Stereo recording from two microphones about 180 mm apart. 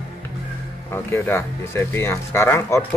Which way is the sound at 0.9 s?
10° left (ahead or behind).